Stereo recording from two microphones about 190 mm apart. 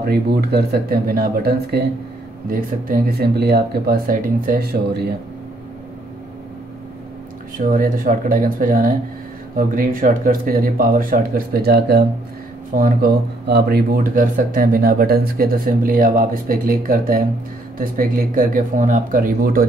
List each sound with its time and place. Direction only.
0.0 s speech: 55° right (ahead or behind)
7.5 s speech: 50° right (ahead or behind)